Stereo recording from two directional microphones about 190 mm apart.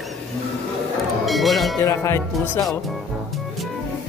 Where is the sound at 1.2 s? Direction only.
Centre (ahead or behind).